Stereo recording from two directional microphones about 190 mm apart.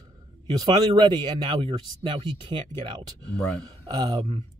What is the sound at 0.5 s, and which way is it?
Speech, 20° right (ahead or behind).